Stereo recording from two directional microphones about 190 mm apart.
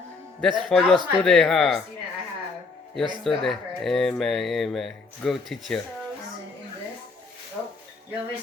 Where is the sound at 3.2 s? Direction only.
Centre (ahead or behind).